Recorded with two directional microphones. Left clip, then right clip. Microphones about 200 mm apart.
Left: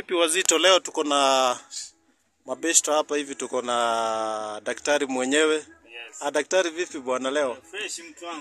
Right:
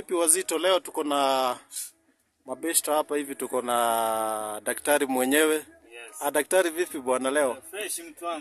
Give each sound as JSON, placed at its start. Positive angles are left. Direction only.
{"t": 0.0, "sound": "a man's voice", "side_deg": -10}